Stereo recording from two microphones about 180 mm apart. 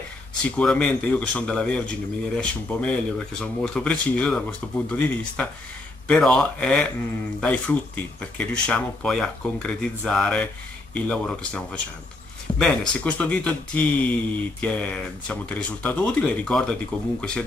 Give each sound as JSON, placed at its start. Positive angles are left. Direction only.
{"t": 0.4, "sound": "a man's voice", "side_deg": 5}